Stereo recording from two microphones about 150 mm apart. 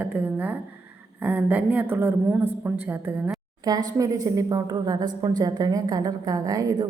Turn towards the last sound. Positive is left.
turn(degrees=-25)  # may be behind; listen again after turning